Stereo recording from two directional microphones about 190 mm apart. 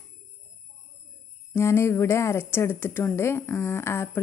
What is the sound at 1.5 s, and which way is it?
A woman's voice, 15° left (ahead or behind).